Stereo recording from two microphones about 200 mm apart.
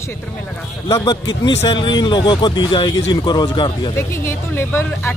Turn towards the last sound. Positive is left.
turn(degrees=10)  # may be behind; listen again after turning